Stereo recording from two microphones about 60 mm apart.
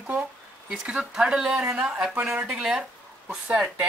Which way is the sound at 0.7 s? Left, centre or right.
Centre.